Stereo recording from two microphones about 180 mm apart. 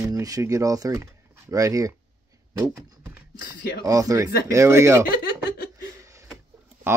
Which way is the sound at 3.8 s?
20° right (ahead or behind).